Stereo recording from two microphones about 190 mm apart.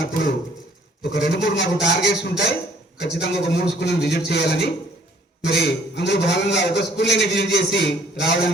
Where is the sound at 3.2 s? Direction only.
60° left (ahead or behind).